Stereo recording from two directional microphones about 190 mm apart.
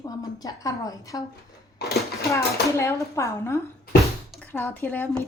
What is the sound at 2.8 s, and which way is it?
A woman's voice, 15° left (ahead or behind).